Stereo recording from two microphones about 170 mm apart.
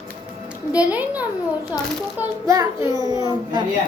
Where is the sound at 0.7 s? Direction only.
10° right (ahead or behind).